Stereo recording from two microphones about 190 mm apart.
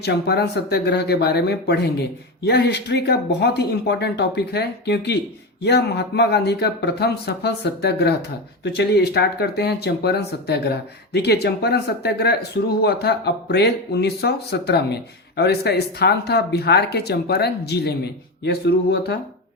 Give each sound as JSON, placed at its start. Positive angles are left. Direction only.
{"t": 0.0, "sound": "speech", "side_deg": 60}